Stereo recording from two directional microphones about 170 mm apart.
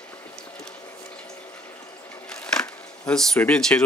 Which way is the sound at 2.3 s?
5° left (ahead or behind).